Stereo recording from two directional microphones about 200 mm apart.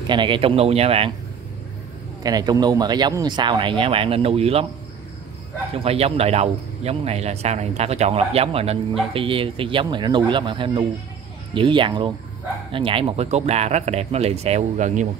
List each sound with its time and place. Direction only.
0.0 s speech: 25° right (ahead or behind)
2.2 s speech: 20° right (ahead or behind)
5.8 s speech: 30° right (ahead or behind)